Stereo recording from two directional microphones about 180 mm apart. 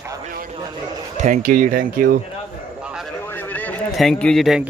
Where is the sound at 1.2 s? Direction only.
45° right (ahead or behind).